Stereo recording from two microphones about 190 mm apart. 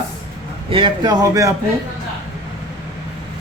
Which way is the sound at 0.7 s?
25° right (ahead or behind).